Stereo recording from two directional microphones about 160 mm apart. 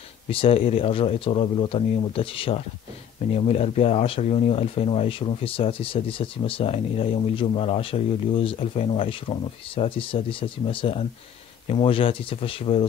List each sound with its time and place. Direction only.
0.3 s speech: 35° left (ahead or behind)